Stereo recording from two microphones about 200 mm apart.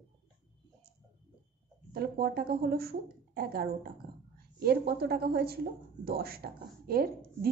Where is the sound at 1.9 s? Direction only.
50° right (ahead or behind).